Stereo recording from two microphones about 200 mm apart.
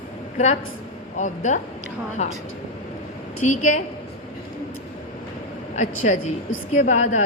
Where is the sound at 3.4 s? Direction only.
40° left (ahead or behind).